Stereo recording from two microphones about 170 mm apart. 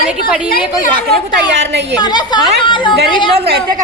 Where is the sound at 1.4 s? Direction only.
90° right.